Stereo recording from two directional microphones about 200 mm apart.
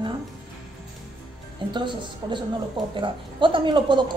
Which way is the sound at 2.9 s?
25° right (ahead or behind).